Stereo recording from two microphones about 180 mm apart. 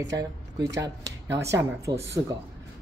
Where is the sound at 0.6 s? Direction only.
75° right (ahead or behind).